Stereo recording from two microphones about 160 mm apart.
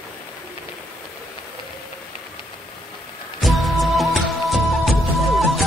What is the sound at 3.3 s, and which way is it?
Music, centre (ahead or behind).